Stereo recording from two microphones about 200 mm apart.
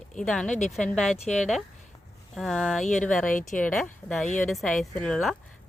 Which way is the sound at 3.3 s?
40° left (ahead or behind).